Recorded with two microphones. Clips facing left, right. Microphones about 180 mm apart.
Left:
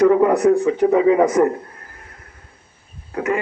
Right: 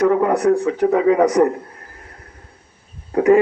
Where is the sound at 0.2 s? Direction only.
10° left (ahead or behind).